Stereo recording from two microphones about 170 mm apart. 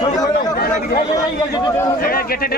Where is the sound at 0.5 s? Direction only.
65° left (ahead or behind).